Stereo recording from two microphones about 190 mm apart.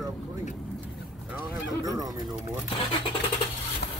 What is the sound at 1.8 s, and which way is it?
Speech, 20° right (ahead or behind).